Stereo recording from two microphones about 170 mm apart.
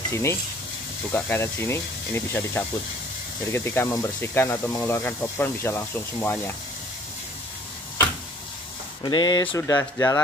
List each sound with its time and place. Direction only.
0.1 s speech: 15° left (ahead or behind)
9.0 s speech: 25° left (ahead or behind)